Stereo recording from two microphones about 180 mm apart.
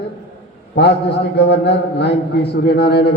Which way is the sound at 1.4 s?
70° left (ahead or behind).